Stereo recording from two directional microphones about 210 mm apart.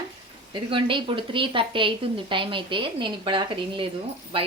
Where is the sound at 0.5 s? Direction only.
25° right (ahead or behind).